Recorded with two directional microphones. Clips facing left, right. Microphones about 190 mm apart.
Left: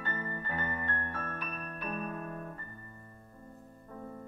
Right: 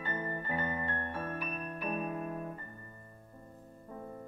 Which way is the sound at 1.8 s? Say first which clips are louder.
Right 2 dB; 15° right (ahead or behind).